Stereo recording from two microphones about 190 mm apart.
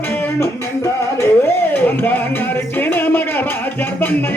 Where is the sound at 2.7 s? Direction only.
10° left (ahead or behind).